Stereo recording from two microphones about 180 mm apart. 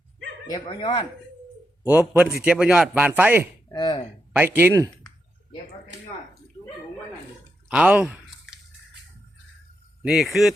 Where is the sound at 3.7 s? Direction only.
25° left (ahead or behind).